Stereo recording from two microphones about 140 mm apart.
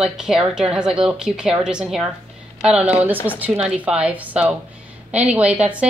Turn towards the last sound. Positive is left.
turn(degrees=-10)  # may be behind; listen again after turning